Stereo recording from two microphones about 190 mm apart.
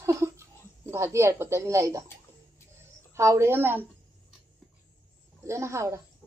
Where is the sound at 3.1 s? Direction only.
15° right (ahead or behind).